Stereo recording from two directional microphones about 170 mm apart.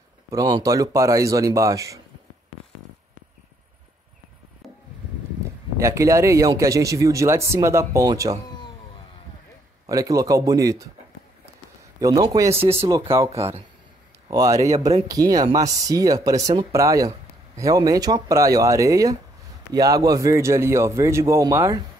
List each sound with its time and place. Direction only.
0.3 s speech: 20° right (ahead or behind)
4.6 s a sound: centre (ahead or behind)
5.8 s speech: 20° right (ahead or behind)
9.8 s speech: 20° right (ahead or behind)
12.0 s speech: 20° right (ahead or behind)
13.1 s speech: 15° right (ahead or behind)